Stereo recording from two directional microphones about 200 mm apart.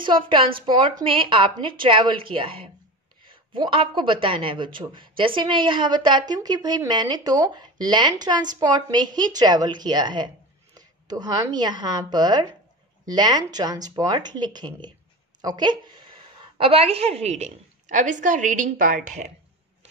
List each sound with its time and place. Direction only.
0.0 s a woman's voice: 25° right (ahead or behind); by 18.9 s 40° right (ahead or behind)